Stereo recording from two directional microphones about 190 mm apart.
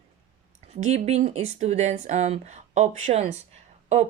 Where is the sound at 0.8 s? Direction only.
35° right (ahead or behind).